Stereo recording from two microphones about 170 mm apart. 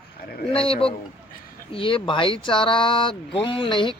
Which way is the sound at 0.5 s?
35° left (ahead or behind).